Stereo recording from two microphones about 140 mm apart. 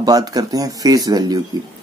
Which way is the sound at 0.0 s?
30° right (ahead or behind).